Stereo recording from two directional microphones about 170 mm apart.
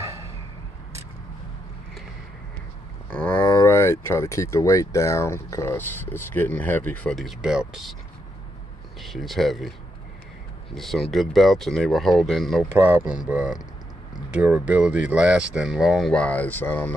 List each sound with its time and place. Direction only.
3.1 s a sound: 10° left (ahead or behind)
3.4 s speech: 20° left (ahead or behind); by 7.9 s 5° right (ahead or behind)
9.0 s speech: centre (ahead or behind)
12.6 s speech: 10° right (ahead or behind); by 16.9 s 10° left (ahead or behind)